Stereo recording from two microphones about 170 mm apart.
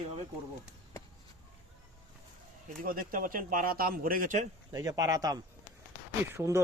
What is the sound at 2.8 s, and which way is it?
Speech, 55° right (ahead or behind).